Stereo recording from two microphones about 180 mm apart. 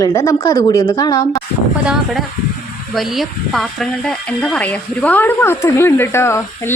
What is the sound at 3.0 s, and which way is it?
Speech, centre (ahead or behind).